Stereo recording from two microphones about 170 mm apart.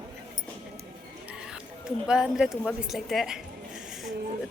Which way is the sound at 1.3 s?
5° right (ahead or behind).